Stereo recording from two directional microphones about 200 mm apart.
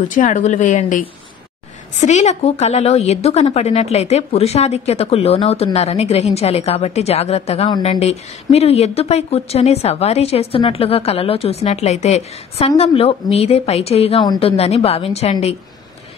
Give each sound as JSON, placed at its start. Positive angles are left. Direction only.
{"t": 0.1, "sound": "speech", "side_deg": 40}